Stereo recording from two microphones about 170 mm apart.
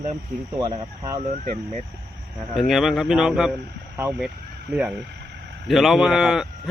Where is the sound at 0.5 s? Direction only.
20° right (ahead or behind).